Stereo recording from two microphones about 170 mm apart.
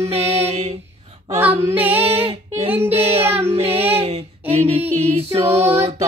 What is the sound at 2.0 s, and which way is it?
Female singing, 35° right (ahead or behind).